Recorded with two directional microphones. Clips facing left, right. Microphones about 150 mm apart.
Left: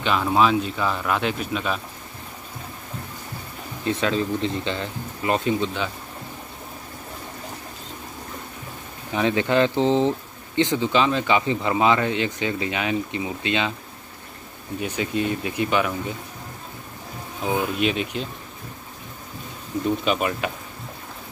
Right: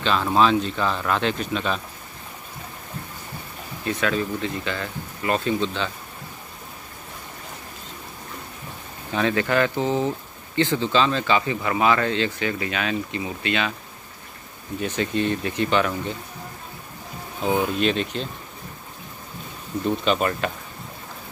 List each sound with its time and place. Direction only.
0.0 s speech: 10° left (ahead or behind)
3.8 s speech: 25° left (ahead or behind)
9.1 s speech: 20° left (ahead or behind)
14.8 s speech: 10° left (ahead or behind)
17.7 s speech: 10° left (ahead or behind)
20.1 s speech: 10° left (ahead or behind)